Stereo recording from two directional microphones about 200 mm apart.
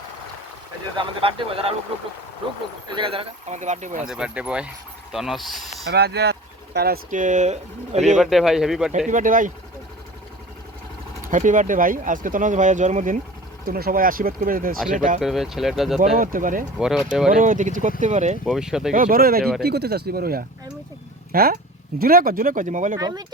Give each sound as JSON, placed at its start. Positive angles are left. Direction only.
{"t": 0.9, "sound": "speech", "side_deg": -25}
{"t": 2.8, "sound": "speech", "side_deg": -25}
{"t": 4.0, "sound": "speech", "side_deg": -5}
{"t": 5.9, "sound": "speech", "side_deg": -55}
{"t": 8.2, "sound": "speech", "side_deg": 0}
{"t": 9.0, "sound": "speech", "side_deg": -40}
{"t": 11.2, "sound": "speech", "side_deg": -40}
{"t": 15.2, "sound": "speech", "side_deg": 0}
{"t": 16.0, "sound": "speech", "side_deg": -40}
{"t": 16.7, "sound": "speech", "side_deg": -5}
{"t": 17.3, "sound": "speech", "side_deg": -40}
{"t": 18.4, "sound": "speech", "side_deg": 0}
{"t": 18.9, "sound": "speech", "side_deg": -45}
{"t": 23.0, "sound": "speech", "side_deg": -20}